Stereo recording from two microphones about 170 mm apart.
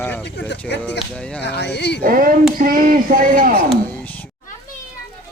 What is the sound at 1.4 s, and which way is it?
Speech, 80° left.